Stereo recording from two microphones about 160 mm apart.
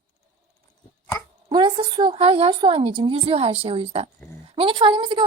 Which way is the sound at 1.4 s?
30° right (ahead or behind).